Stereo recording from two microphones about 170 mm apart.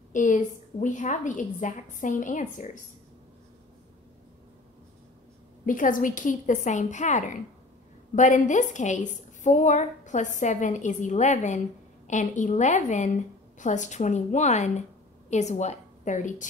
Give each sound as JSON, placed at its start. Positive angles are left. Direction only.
{"t": 0.1, "sound": "a woman's voice", "side_deg": 50}
{"t": 5.7, "sound": "a woman's voice", "side_deg": 50}